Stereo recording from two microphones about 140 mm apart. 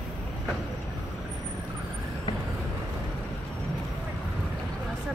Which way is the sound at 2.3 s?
30° left (ahead or behind).